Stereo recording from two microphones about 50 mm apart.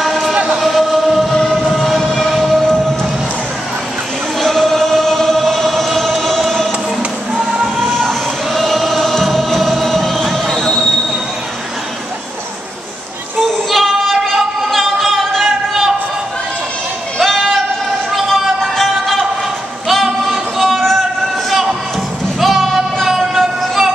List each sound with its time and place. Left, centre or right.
0.0 s music: centre
1.5 s train: centre
4.4 s choir: centre
7.0 s music: centre
7.8 s music: centre
13.4 s child singing: centre
17.2 s a sound: centre
18.3 s music: centre
22.4 s music: centre